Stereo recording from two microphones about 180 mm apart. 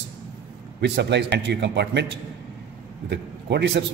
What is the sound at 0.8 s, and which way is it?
A man's voice, 70° right (ahead or behind).